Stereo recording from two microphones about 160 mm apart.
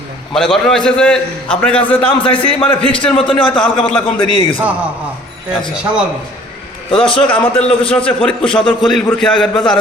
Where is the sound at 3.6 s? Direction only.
10° left (ahead or behind).